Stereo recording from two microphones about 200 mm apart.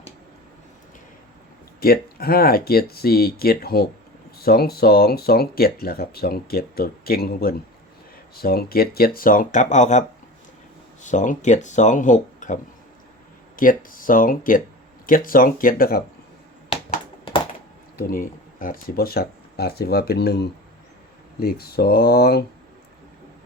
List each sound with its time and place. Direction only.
1.8 s speech: 50° left (ahead or behind)
11.0 s speech: 40° left (ahead or behind)
13.6 s speech: 45° left (ahead or behind)
17.9 s speech: 45° left (ahead or behind)